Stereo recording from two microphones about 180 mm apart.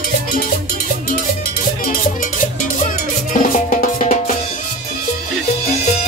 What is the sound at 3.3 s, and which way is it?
Music, 45° left (ahead or behind).